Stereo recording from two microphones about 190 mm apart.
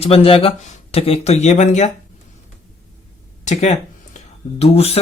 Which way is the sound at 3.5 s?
40° left (ahead or behind).